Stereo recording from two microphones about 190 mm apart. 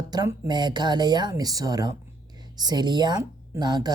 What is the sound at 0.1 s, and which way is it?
A woman's voice, 20° right (ahead or behind).